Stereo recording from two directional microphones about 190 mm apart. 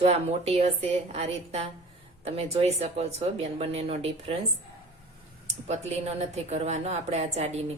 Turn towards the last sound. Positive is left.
turn(degrees=-35)  # may be behind; listen again after turning